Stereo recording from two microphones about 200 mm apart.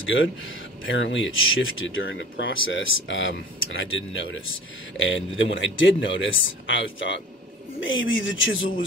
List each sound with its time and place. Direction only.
0.0 s speech: 70° left (ahead or behind)